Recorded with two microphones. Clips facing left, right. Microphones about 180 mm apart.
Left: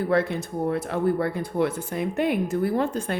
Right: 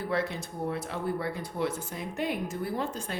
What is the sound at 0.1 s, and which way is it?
Speech, 55° left (ahead or behind).